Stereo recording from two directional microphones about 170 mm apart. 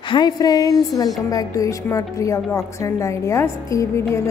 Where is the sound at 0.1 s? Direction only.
25° left (ahead or behind).